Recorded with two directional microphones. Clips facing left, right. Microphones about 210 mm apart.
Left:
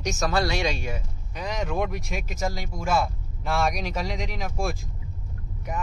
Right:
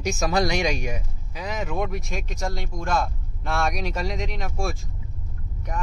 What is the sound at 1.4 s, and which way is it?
Speech, 5° right (ahead or behind).